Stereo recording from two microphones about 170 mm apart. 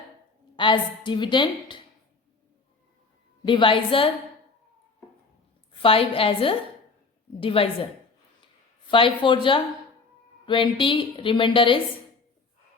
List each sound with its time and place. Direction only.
0.5 s a woman's voice: 30° left (ahead or behind)
3.4 s a woman's voice: 30° left (ahead or behind)
5.7 s a woman's voice: 30° left (ahead or behind)
8.9 s a woman's voice: 30° left (ahead or behind)